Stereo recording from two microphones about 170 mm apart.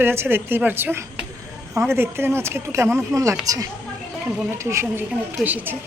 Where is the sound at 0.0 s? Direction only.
15° right (ahead or behind).